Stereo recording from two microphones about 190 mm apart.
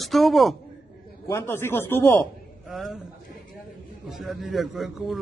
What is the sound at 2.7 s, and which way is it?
Speech, centre (ahead or behind).